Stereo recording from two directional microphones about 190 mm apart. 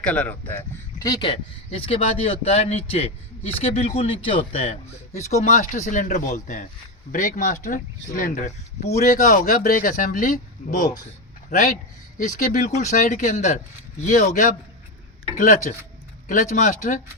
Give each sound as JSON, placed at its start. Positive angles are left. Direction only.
{"t": 0.0, "sound": "speech", "side_deg": 5}
{"t": 0.9, "sound": "speech", "side_deg": 20}
{"t": 12.1, "sound": "speech", "side_deg": 45}
{"t": 15.7, "sound": "speech", "side_deg": 40}